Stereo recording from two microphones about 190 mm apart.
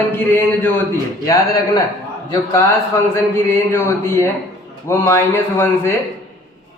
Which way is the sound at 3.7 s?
15° left (ahead or behind).